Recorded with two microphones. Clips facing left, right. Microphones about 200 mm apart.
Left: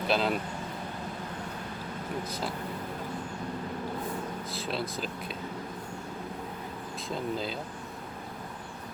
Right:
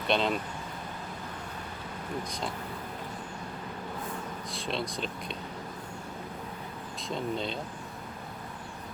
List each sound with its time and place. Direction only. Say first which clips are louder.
0.1 s speech: even; 5° left (ahead or behind)
2.2 s speech: left 1 dB; 5° left (ahead or behind)
4.5 s speech: right 1 dB; 5° left (ahead or behind)
7.1 s speech: even; 5° left (ahead or behind)